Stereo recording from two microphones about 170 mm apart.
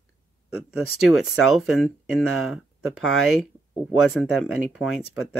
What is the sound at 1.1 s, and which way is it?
Speech, centre (ahead or behind).